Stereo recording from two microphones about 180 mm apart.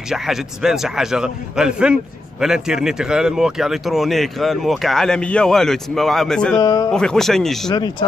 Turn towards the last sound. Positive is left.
turn(degrees=0)  # may be behind; listen again after turning